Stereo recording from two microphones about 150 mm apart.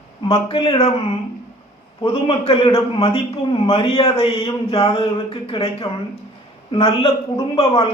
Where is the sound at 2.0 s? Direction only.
35° left (ahead or behind).